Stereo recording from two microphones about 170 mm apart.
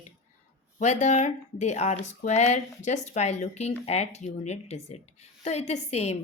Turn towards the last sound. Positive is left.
turn(degrees=40)  # may be behind; listen again after turning